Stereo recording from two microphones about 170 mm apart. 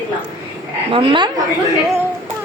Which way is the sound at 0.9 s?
30° right (ahead or behind).